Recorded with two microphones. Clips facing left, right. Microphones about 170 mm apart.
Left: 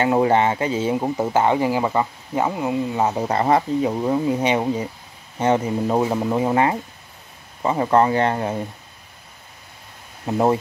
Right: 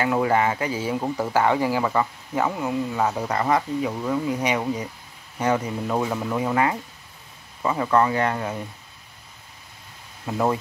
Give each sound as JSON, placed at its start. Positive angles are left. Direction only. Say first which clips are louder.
{"t": 0.0, "sound": "speech", "louder": "left 4 dB", "side_deg": 25}
{"t": 10.2, "sound": "speech", "louder": "left 5 dB", "side_deg": 25}